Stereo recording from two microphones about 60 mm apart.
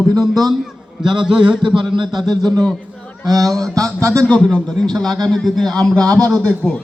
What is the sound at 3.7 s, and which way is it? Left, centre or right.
Speech, right.